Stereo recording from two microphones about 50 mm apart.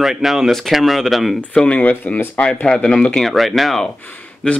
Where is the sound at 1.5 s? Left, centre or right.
Left.